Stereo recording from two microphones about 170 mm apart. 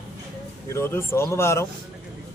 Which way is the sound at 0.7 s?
15° left (ahead or behind).